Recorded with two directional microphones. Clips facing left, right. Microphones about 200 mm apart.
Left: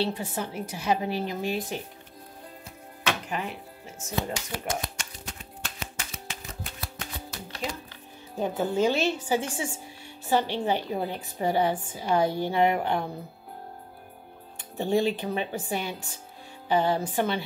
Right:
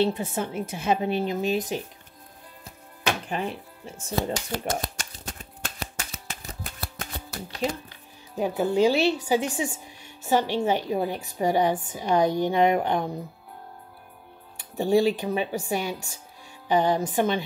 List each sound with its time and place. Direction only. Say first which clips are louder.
0.0 s a woman's voice: right 4 dB; 20° right (ahead or behind)
3.3 s music: right 3 dB; 30° right (ahead or behind); by 7.7 s 45° right (ahead or behind)
8.4 s a woman's voice: right 3 dB; 10° right (ahead or behind)
14.8 s a woman's voice: right 4 dB; 15° right (ahead or behind)
16.6 s a woman's voice: right 2 dB; 15° right (ahead or behind)